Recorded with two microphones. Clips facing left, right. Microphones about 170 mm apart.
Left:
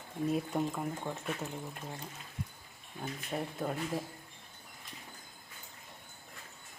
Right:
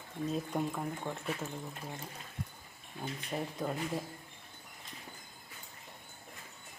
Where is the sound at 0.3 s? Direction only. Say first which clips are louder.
Left 2 dB; 5° left (ahead or behind).